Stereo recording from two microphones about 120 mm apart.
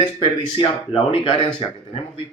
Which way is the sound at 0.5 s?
50° left (ahead or behind).